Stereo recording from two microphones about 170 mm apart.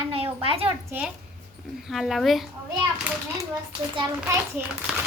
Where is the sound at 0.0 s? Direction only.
35° right (ahead or behind).